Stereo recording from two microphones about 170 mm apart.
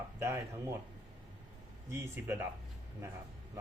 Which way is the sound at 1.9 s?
15° right (ahead or behind).